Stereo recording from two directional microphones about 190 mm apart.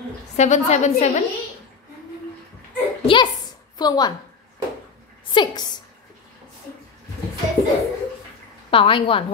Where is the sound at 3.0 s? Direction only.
25° left (ahead or behind).